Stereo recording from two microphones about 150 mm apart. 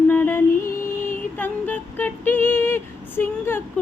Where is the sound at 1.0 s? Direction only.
10° left (ahead or behind).